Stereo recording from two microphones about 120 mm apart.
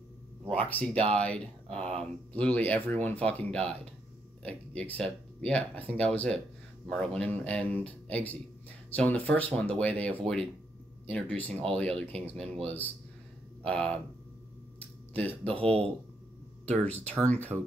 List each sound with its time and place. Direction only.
0.7 s speech: 10° left (ahead or behind)
14.8 s a sound: 10° left (ahead or behind)
15.5 s speech: 55° right (ahead or behind)
16.6 s speech: 10° left (ahead or behind)